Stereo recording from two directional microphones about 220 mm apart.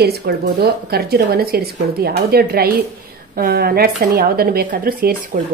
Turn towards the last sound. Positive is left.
turn(degrees=-40)  # may be behind; listen again after turning